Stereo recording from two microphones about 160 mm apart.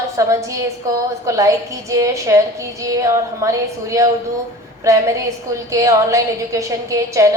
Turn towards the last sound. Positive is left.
turn(degrees=-20)  # may be behind; listen again after turning